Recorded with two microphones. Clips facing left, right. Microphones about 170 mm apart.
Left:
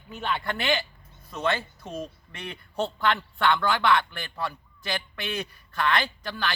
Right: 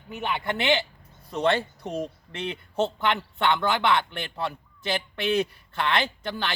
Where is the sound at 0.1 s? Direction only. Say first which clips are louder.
Right 1 dB; 15° right (ahead or behind).